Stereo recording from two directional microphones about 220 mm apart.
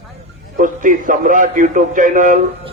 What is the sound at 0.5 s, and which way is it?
A man's voice, 35° right (ahead or behind).